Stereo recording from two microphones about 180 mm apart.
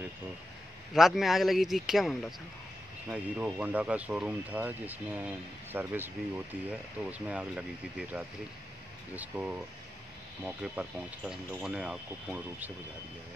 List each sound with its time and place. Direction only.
0.9 s speech: centre (ahead or behind)